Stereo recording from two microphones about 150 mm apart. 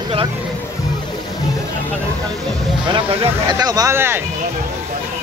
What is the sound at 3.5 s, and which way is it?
Speech, 25° right (ahead or behind).